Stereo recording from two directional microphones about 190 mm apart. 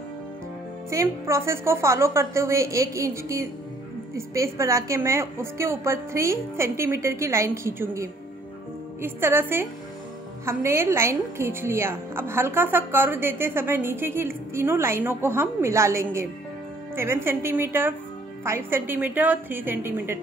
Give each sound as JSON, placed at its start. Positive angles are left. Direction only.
{"t": 0.8, "sound": "a woman's voice", "side_deg": -15}